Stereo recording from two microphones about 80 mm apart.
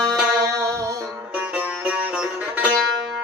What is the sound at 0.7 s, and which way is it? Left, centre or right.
Music, right.